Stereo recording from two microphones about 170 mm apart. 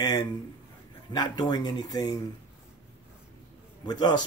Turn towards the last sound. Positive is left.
turn(degrees=25)  # may be behind; listen again after turning